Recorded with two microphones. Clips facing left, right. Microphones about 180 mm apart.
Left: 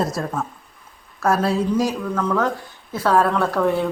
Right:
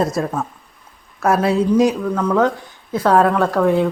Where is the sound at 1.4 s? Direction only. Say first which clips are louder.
Right 5 dB; 20° right (ahead or behind).